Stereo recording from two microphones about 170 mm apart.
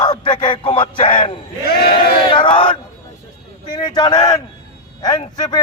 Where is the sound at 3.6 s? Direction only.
25° left (ahead or behind).